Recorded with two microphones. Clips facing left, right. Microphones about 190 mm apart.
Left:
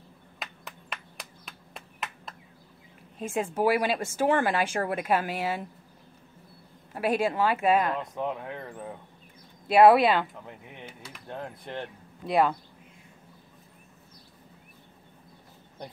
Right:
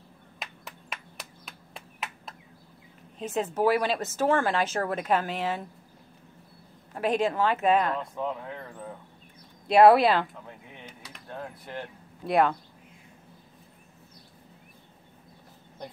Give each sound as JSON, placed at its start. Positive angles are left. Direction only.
{"t": 0.4, "sound": "clapping", "side_deg": 0}
{"t": 3.2, "sound": "speech", "side_deg": 10}
{"t": 6.9, "sound": "speech", "side_deg": 10}
{"t": 9.7, "sound": "speech", "side_deg": 5}
{"t": 12.3, "sound": "speech", "side_deg": 0}